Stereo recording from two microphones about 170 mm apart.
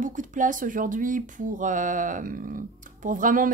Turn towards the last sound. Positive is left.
turn(degrees=-50)  # may be behind; listen again after turning